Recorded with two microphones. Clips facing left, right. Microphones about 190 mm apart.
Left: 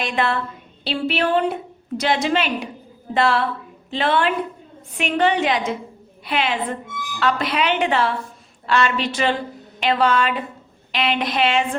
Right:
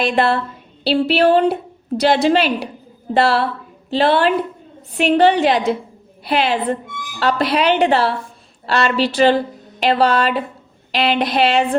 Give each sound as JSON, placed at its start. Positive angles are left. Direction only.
{"t": 0.0, "sound": "a woman's voice", "side_deg": -35}